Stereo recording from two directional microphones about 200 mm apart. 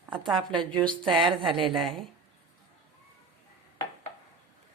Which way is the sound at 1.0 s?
25° right (ahead or behind).